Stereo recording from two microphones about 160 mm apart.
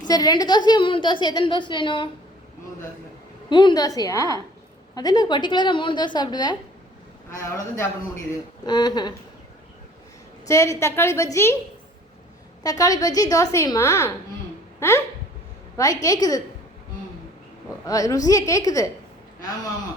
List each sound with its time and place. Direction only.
0.1 s a woman's voice: 25° left (ahead or behind)
3.5 s a woman's voice: 30° left (ahead or behind)
10.4 s a woman's voice: 20° left (ahead or behind)
12.6 s a woman's voice: 20° left (ahead or behind)
17.8 s a woman's voice: 20° left (ahead or behind)